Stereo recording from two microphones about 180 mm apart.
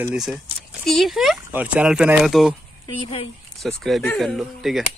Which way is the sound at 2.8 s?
30° left (ahead or behind).